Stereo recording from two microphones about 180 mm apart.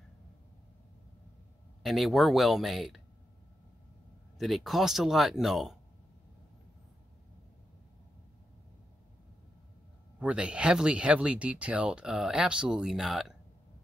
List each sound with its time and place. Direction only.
1.8 s speech: centre (ahead or behind)
4.4 s speech: centre (ahead or behind)
10.1 s speech: 5° right (ahead or behind)